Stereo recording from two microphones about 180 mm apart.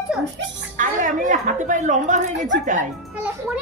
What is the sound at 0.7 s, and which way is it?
A woman's voice, 45° right (ahead or behind).